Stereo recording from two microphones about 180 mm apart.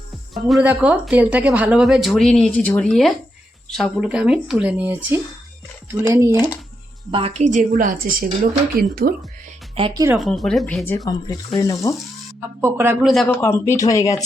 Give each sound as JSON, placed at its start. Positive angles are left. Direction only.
{"t": 0.3, "sound": "a woman's voice", "side_deg": 0}
{"t": 6.0, "sound": "speech", "side_deg": -15}
{"t": 7.1, "sound": "a woman's voice", "side_deg": -30}
{"t": 9.7, "sound": "speech", "side_deg": -30}
{"t": 10.2, "sound": "a woman's voice", "side_deg": 0}
{"t": 10.8, "sound": "speech", "side_deg": 15}
{"t": 12.6, "sound": "speech", "side_deg": -15}
{"t": 13.0, "sound": "a woman's voice", "side_deg": 0}
{"t": 13.2, "sound": "speech", "side_deg": 15}